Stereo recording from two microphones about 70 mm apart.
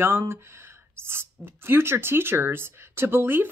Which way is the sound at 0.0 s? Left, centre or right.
Right.